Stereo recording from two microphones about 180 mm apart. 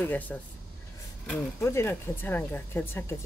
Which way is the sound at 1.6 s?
15° left (ahead or behind).